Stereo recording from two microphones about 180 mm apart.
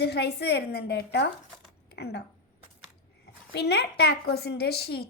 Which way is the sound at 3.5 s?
65° left (ahead or behind).